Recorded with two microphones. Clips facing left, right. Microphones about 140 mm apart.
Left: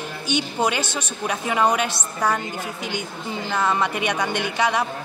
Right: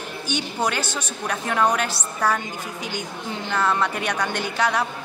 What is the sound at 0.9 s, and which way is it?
A man's voice, 10° left (ahead or behind).